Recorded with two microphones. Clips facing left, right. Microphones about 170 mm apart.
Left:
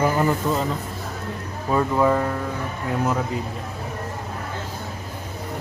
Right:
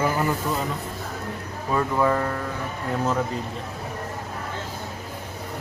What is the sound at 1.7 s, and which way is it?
Speech, 15° left (ahead or behind).